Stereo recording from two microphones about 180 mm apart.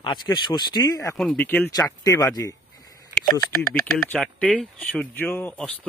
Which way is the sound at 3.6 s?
5° left (ahead or behind).